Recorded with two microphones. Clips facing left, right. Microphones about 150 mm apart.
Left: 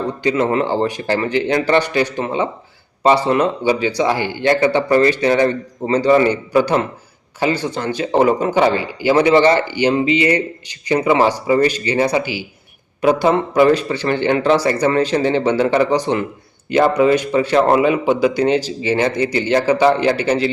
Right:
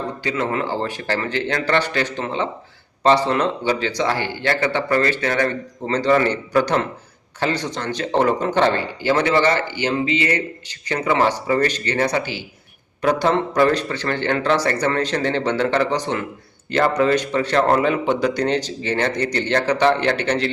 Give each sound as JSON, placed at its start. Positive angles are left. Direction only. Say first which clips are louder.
{"t": 0.2, "sound": "speech", "louder": "left 7 dB", "side_deg": 20}